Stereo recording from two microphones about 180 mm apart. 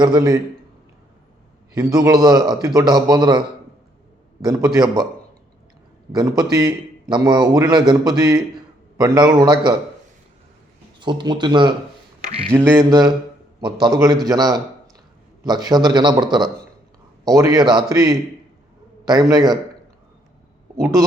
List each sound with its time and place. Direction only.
0.0 s a man's voice: 20° right (ahead or behind)
1.7 s a man's voice: 20° right (ahead or behind)
6.1 s a man's voice: 20° right (ahead or behind)
11.0 s a man's voice: 25° right (ahead or behind)
12.5 s mantra: 15° right (ahead or behind)
13.6 s a man's voice: 25° right (ahead or behind)